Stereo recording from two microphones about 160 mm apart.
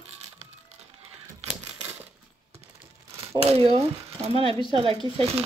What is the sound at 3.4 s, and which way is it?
Speech, 40° right (ahead or behind).